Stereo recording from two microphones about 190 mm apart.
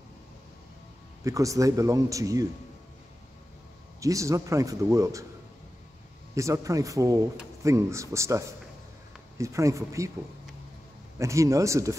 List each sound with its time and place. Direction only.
1.2 s a man's voice: 15° right (ahead or behind)
4.0 s a man's voice: 15° right (ahead or behind)
6.3 s a man's voice: 15° right (ahead or behind)
11.1 s a man's voice: 15° right (ahead or behind)